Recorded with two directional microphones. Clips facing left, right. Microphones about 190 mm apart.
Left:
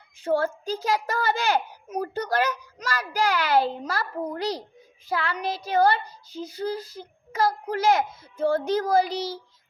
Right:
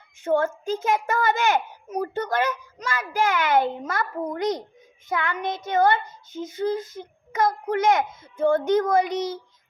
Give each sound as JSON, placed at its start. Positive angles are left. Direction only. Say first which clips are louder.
{"t": 0.2, "sound": "a child's voice", "louder": "right 2 dB", "side_deg": 35}